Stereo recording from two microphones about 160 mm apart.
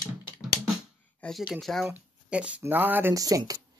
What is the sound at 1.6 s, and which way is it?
Speech, centre (ahead or behind).